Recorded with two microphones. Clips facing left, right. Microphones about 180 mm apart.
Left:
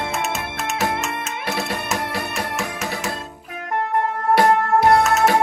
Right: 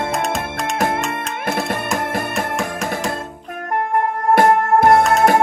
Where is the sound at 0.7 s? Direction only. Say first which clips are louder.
Right 3 dB; 50° right (ahead or behind).